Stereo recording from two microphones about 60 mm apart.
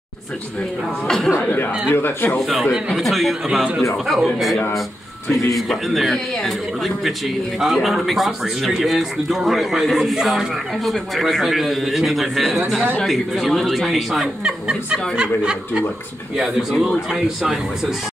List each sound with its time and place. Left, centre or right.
1.0 s speech: centre
1.5 s a man's voice: left
2.9 s a man's voice: centre